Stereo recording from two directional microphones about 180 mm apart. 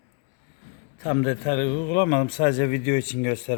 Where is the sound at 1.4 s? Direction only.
35° left (ahead or behind).